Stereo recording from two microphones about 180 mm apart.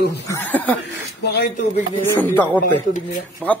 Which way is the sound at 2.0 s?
10° left (ahead or behind).